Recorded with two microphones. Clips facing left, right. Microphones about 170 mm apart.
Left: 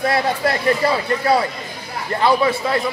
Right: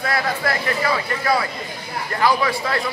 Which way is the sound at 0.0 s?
30° left (ahead or behind).